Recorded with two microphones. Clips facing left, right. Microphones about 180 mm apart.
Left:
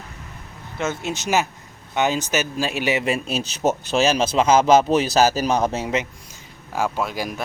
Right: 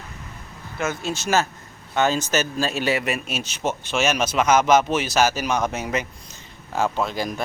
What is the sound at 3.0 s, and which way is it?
Speech, 30° left (ahead or behind).